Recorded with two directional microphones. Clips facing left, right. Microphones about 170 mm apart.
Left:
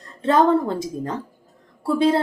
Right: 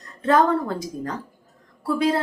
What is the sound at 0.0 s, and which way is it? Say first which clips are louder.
A woman's voice: left 1 dB; 25° left (ahead or behind).